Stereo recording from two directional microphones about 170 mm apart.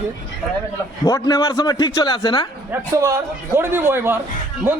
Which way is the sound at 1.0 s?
20° left (ahead or behind).